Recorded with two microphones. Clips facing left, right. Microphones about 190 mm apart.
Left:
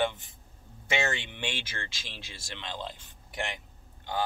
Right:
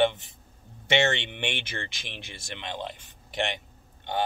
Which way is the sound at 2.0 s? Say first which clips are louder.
Right 4 dB; 60° right (ahead or behind).